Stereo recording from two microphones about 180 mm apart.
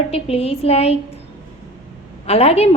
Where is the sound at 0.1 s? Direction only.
35° left (ahead or behind).